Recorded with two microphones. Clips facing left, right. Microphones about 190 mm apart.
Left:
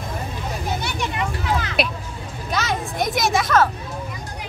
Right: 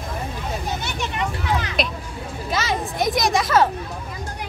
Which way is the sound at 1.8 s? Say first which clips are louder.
Left 1 dB; 5° left (ahead or behind).